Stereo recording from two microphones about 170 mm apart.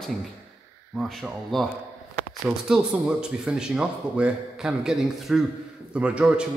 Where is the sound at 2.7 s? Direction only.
5° right (ahead or behind).